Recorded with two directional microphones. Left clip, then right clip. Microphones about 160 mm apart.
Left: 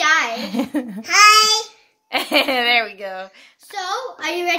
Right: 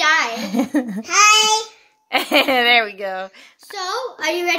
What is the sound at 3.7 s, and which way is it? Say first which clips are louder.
Speech: even; 15° right (ahead or behind).